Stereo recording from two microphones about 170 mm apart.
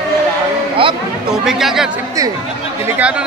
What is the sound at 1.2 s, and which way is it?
Speech, centre (ahead or behind).